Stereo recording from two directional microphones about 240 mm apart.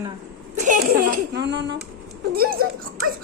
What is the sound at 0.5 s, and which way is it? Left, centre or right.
A child's voice, right.